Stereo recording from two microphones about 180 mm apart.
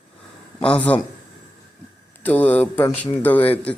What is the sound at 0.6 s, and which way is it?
Speech, 5° left (ahead or behind).